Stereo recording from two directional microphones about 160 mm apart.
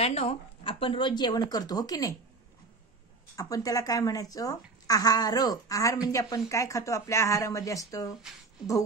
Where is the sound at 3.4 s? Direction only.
20° left (ahead or behind).